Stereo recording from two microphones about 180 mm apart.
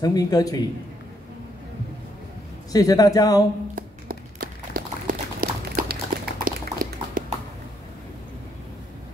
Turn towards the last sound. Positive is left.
turn(degrees=-50)  # may be behind; listen again after turning